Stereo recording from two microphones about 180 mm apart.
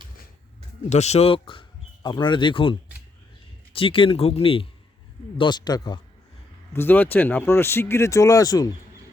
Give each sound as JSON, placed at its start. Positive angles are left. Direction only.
{"t": 0.9, "sound": "speech", "side_deg": 40}
{"t": 6.7, "sound": "speech", "side_deg": 10}